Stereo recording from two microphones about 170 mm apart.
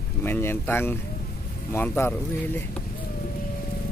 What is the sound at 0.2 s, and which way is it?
Speech, 15° left (ahead or behind).